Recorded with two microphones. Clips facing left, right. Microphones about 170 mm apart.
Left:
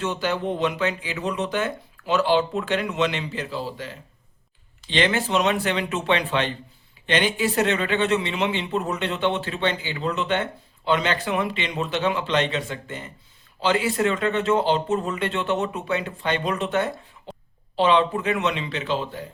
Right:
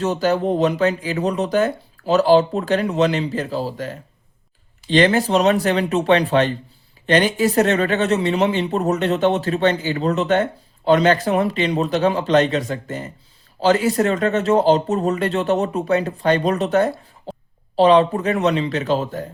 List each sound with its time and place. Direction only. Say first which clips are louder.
0.0 s speech: right 6 dB; 40° right (ahead or behind)